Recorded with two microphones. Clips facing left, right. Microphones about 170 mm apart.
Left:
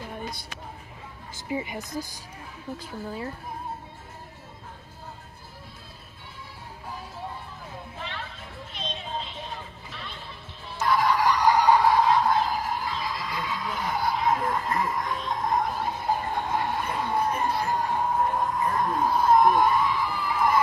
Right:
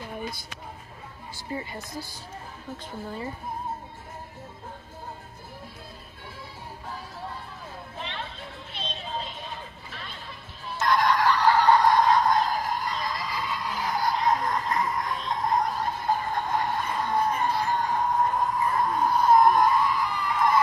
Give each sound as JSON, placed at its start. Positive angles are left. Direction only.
{"t": 1.5, "sound": "speech", "side_deg": 15}
{"t": 2.8, "sound": "speech", "side_deg": 5}
{"t": 8.0, "sound": "music", "side_deg": -20}
{"t": 8.7, "sound": "music", "side_deg": -30}
{"t": 10.8, "sound": "a sound", "side_deg": 5}
{"t": 16.3, "sound": "music", "side_deg": 5}